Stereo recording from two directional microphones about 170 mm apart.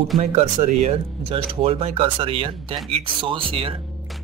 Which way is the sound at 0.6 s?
45° right (ahead or behind).